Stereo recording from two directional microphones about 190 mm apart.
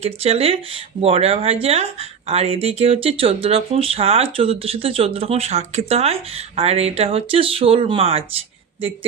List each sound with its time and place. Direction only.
0.0 s speech: 30° right (ahead or behind)